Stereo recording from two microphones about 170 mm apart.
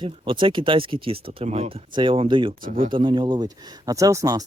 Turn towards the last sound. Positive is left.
turn(degrees=-20)  # may be behind; listen again after turning